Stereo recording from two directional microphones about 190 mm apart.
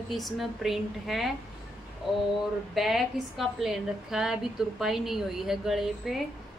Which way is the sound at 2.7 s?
Centre (ahead or behind).